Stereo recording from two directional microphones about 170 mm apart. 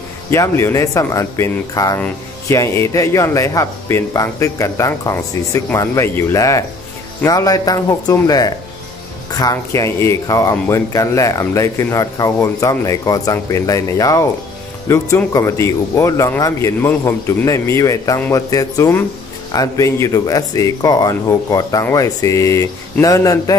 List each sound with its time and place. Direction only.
0.3 s speech: 15° left (ahead or behind)